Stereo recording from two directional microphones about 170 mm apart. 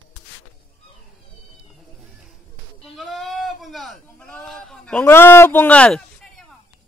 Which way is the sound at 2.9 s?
Centre (ahead or behind).